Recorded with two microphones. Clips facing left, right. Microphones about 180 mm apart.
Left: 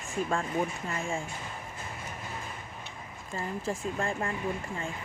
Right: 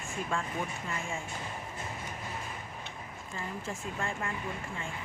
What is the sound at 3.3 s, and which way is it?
Speech, 35° left (ahead or behind).